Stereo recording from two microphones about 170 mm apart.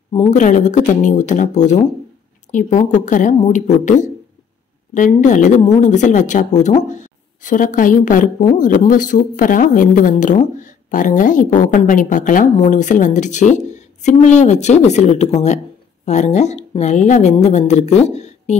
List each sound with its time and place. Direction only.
0.1 s speech: 35° left (ahead or behind)
0.4 s a woman's voice: 45° left (ahead or behind)